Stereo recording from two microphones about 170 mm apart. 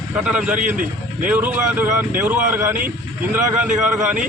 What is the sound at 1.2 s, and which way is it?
A man's voice, 10° right (ahead or behind).